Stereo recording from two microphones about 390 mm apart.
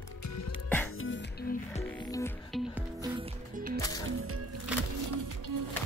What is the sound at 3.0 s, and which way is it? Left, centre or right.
Music, centre.